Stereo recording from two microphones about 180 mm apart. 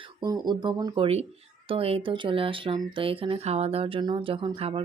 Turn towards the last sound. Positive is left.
turn(degrees=-30)  # may be behind; listen again after turning